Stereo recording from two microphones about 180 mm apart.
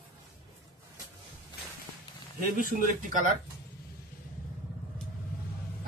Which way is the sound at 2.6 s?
50° right (ahead or behind).